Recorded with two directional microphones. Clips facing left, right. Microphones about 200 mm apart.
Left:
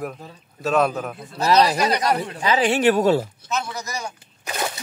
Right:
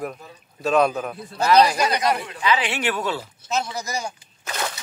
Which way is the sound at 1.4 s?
30° left (ahead or behind).